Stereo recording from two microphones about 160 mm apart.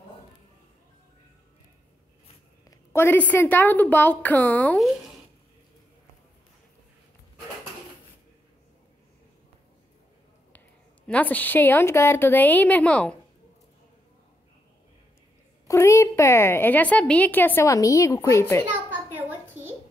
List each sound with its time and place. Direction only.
2.7 s a woman's voice: 15° left (ahead or behind)
11.1 s a woman's voice: 10° left (ahead or behind)
15.6 s a woman's voice: 15° left (ahead or behind)
19.1 s a sound: 10° right (ahead or behind)